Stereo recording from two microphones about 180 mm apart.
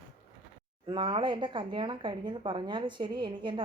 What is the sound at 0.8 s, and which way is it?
Speech, 25° right (ahead or behind).